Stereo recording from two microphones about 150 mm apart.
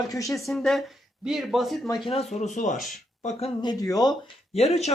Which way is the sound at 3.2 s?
40° left (ahead or behind).